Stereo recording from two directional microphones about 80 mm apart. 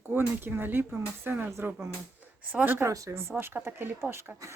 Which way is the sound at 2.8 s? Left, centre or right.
Right.